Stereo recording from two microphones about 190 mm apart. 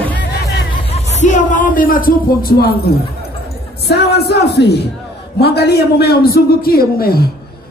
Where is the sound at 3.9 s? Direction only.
60° left (ahead or behind).